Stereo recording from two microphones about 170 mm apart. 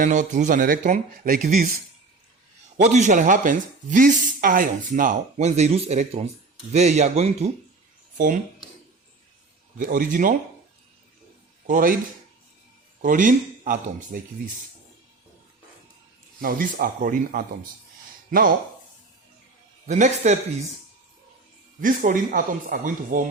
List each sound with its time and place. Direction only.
0.0 s speech: 45° right (ahead or behind)
2.7 s speech: 45° right (ahead or behind)
9.7 s speech: 55° right (ahead or behind)
11.6 s speech: 55° right (ahead or behind)
13.0 s speech: 50° right (ahead or behind)
16.4 s speech: 55° right (ahead or behind)
19.9 s speech: 45° right (ahead or behind)
21.8 s speech: 50° right (ahead or behind)